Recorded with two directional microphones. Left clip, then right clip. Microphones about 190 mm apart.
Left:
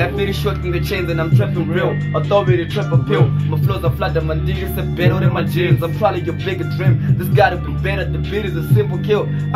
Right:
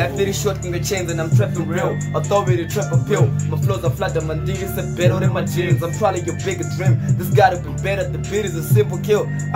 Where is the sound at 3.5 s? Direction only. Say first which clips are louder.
Left 1 dB; 15° right (ahead or behind).